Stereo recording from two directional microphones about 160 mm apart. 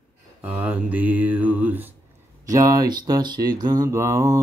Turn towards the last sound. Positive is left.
turn(degrees=-20)  # may be behind; listen again after turning